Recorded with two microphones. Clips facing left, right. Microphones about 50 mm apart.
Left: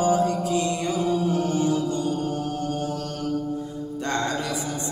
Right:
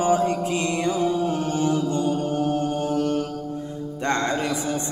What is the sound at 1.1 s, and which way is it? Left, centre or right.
Music, right.